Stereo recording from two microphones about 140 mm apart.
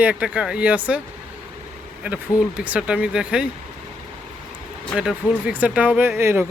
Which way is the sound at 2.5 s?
10° right (ahead or behind).